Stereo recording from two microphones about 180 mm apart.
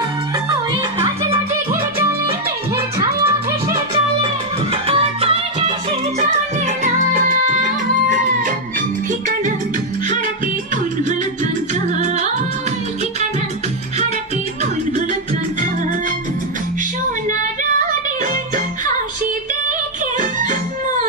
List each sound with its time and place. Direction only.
4.8 s music: 35° right (ahead or behind)